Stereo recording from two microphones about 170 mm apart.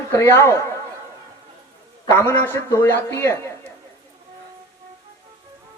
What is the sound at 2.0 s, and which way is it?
A man's voice, 15° left (ahead or behind).